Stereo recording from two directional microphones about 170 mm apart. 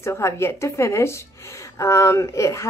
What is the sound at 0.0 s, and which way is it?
A woman's voice, 15° left (ahead or behind).